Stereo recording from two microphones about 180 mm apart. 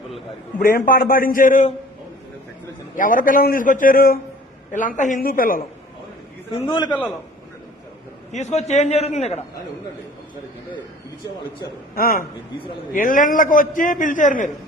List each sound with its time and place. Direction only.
0.6 s a man's voice: 55° left (ahead or behind)
2.9 s a man's voice: 45° left (ahead or behind)
4.7 s a man's voice: 45° left (ahead or behind)
6.5 s a man's voice: 25° left (ahead or behind)
8.3 s a man's voice: 40° left (ahead or behind)
11.9 s a man's voice: 55° left (ahead or behind)